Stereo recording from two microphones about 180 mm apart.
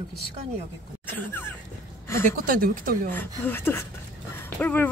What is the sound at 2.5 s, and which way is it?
Speech, 55° right (ahead or behind).